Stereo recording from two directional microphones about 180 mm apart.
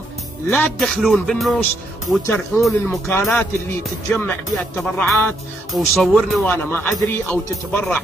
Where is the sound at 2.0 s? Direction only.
15° left (ahead or behind).